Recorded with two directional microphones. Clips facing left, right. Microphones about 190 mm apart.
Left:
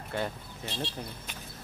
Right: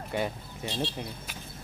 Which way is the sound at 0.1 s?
15° right (ahead or behind).